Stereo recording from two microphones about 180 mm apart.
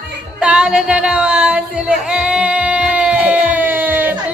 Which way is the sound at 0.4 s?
5° right (ahead or behind).